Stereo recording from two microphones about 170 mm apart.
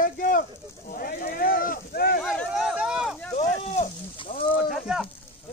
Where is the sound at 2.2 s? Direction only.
Centre (ahead or behind).